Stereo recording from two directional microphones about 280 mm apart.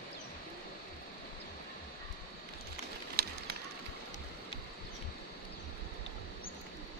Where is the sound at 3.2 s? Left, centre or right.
Right.